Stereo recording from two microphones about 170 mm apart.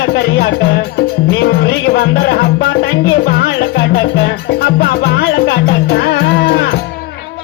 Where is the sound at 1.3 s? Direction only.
70° left (ahead or behind).